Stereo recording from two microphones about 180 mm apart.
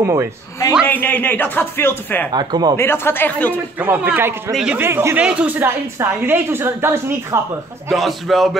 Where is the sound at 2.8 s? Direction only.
15° left (ahead or behind).